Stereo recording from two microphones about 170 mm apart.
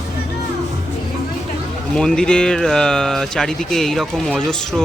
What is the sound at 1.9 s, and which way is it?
Speech, 5° left (ahead or behind).